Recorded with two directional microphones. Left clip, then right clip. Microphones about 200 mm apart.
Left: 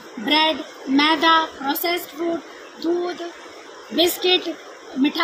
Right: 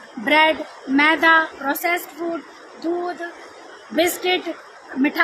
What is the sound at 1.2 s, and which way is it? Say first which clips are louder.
Speech: right 1 dB; 35° right (ahead or behind).